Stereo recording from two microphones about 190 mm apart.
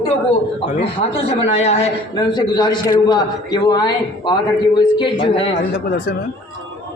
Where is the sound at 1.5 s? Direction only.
35° left (ahead or behind).